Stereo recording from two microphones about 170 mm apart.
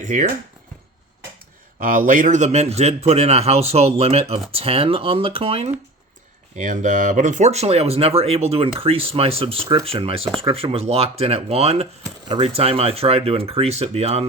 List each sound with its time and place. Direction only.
0.0 s speech: 45° right (ahead or behind)
1.8 s speech: 55° right (ahead or behind); by 5.7 s 35° right (ahead or behind)
6.6 s speech: 45° right (ahead or behind)